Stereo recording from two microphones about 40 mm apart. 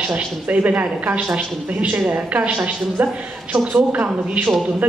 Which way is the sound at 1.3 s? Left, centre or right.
Right.